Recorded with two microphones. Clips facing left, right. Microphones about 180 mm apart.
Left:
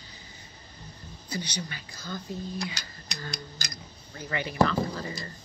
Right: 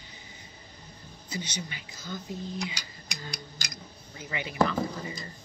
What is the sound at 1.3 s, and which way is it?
Speech, 20° right (ahead or behind).